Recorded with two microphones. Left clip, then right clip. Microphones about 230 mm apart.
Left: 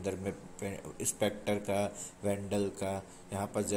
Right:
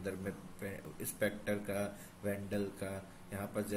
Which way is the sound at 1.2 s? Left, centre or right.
Centre.